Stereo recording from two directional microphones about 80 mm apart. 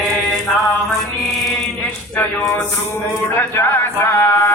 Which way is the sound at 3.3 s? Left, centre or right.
Left.